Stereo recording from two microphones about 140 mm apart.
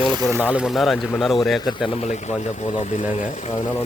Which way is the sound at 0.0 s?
35° right (ahead or behind).